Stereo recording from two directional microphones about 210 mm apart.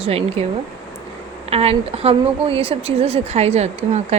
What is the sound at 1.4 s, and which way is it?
A woman's voice, 30° right (ahead or behind).